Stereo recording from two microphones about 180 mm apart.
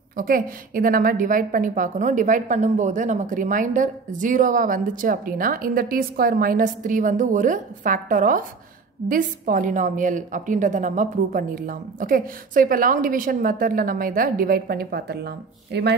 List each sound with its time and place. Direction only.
0.1 s a woman's voice: 50° right (ahead or behind)